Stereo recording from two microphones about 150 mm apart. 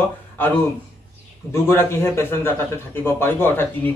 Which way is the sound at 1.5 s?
15° left (ahead or behind).